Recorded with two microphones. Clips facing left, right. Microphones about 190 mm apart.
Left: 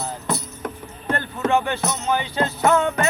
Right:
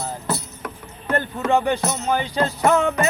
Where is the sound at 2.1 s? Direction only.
35° right (ahead or behind).